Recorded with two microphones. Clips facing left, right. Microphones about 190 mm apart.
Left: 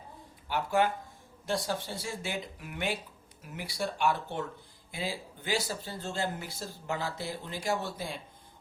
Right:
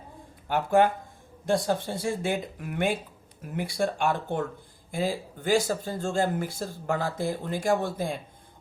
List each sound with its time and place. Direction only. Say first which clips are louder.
0.4 s speech: right 6 dB; 50° right (ahead or behind)